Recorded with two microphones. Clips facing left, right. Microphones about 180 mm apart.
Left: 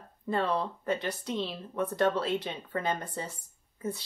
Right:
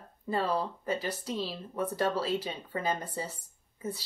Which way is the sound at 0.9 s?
30° right (ahead or behind).